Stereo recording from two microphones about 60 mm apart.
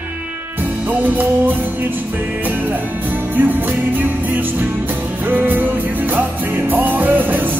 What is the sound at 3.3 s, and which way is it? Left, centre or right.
Music, right.